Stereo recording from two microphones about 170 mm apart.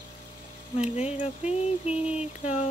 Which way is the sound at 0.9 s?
40° left (ahead or behind).